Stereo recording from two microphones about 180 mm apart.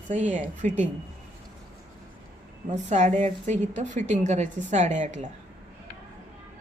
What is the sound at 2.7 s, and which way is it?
A woman's voice, 40° right (ahead or behind).